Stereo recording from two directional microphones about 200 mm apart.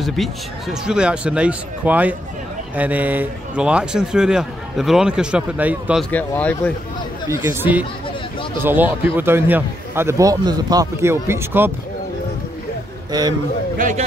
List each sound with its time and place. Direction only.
0.0 s a man's voice: centre (ahead or behind)
6.0 s speech: 5° left (ahead or behind)
7.2 s a man's voice: 10° right (ahead or behind)
13.7 s a man's voice: 40° right (ahead or behind)